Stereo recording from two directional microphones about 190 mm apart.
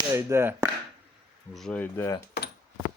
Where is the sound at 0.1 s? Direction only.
15° right (ahead or behind).